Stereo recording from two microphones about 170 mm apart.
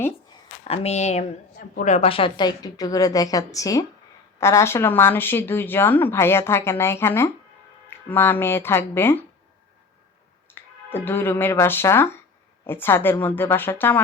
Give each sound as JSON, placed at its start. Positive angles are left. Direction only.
{"t": 0.6, "sound": "a woman's voice", "side_deg": 40}
{"t": 10.5, "sound": "speech", "side_deg": 10}